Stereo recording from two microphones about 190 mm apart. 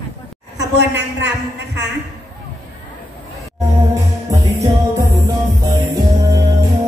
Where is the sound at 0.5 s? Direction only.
65° right (ahead or behind).